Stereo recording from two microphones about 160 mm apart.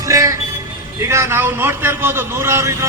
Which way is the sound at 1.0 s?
15° right (ahead or behind).